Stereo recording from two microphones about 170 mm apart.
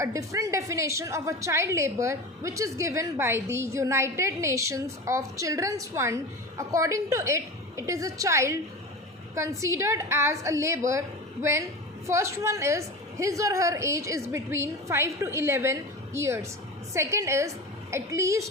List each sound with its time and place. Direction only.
0.0 s a woman's voice: 20° right (ahead or behind)
12.0 s a woman's voice: 15° right (ahead or behind)